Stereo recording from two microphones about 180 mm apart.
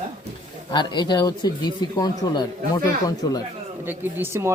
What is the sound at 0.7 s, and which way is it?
Speech, 25° left (ahead or behind).